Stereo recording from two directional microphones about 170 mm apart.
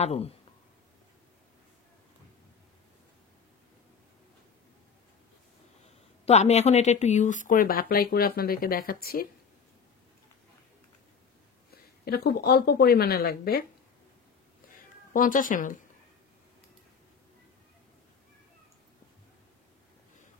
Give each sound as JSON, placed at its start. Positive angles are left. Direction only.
{"t": 0.0, "sound": "speech", "side_deg": 40}
{"t": 6.2, "sound": "speech", "side_deg": 40}
{"t": 12.0, "sound": "a woman's voice", "side_deg": 70}
{"t": 15.1, "sound": "speech", "side_deg": 55}